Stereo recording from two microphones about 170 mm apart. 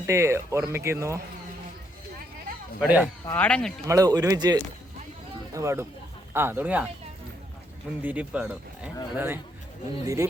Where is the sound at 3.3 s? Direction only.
5° left (ahead or behind).